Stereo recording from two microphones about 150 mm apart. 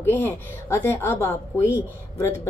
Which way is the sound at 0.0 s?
15° left (ahead or behind).